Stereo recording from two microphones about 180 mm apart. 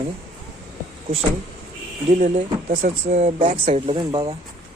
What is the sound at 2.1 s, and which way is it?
Speech, 45° right (ahead or behind).